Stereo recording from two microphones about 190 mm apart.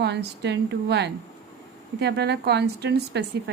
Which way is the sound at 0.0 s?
65° right (ahead or behind).